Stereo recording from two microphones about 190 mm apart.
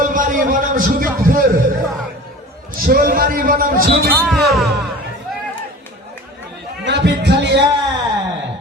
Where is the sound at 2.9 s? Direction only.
50° right (ahead or behind).